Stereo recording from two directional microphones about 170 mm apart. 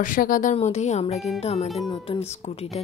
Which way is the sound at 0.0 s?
55° left (ahead or behind).